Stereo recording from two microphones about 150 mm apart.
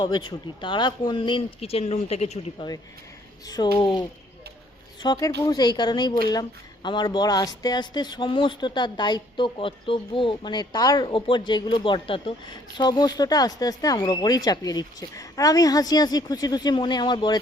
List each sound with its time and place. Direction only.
0.0 s speech: 30° left (ahead or behind); by 2.6 s 45° left (ahead or behind)
3.4 s speech: 25° left (ahead or behind)
5.0 s speech: 20° left (ahead or behind)